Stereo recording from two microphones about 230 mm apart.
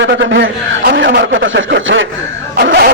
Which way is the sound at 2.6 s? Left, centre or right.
Right.